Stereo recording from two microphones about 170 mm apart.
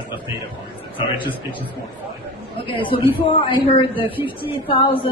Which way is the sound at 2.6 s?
30° left (ahead or behind).